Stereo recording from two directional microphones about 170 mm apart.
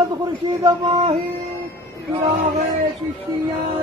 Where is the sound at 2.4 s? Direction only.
50° right (ahead or behind).